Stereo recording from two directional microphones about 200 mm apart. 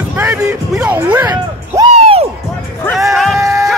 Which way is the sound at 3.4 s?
15° right (ahead or behind).